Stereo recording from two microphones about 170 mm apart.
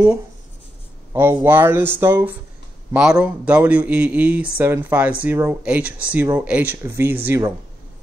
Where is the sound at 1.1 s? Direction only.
10° right (ahead or behind).